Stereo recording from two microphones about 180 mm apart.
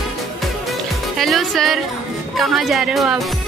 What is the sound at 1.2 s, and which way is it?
Speech, centre (ahead or behind).